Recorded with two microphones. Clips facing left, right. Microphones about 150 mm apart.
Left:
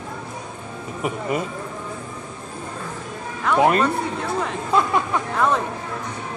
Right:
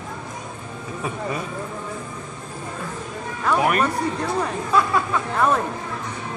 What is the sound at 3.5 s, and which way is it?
Speech, 25° left (ahead or behind).